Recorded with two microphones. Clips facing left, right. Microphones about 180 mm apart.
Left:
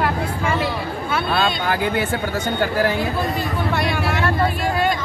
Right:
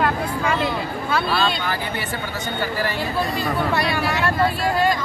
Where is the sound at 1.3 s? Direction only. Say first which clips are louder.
Left 3 dB; 50° left (ahead or behind).